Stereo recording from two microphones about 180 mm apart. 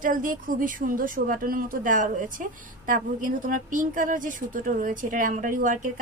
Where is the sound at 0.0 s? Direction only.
45° right (ahead or behind).